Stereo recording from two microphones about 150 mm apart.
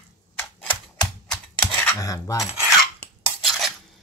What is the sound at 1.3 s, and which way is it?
Scissors, 10° left (ahead or behind).